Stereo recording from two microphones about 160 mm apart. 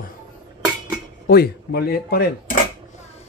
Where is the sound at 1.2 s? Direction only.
80° left.